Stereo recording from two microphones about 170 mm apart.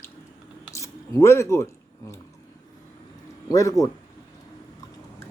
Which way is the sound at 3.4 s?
20° left (ahead or behind).